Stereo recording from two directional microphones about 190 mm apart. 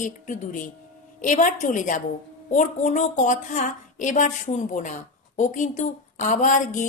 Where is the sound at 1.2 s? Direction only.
40° left (ahead or behind).